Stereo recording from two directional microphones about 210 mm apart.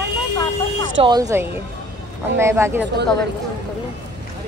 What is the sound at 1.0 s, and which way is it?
Speech, 20° right (ahead or behind).